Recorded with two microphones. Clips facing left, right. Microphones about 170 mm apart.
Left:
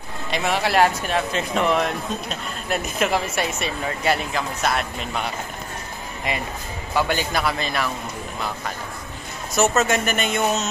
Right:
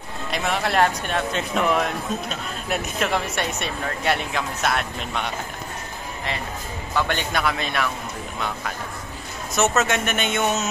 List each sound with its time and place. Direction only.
0.3 s speech: centre (ahead or behind)
6.9 s speech: 10° left (ahead or behind)
9.6 s speech: centre (ahead or behind)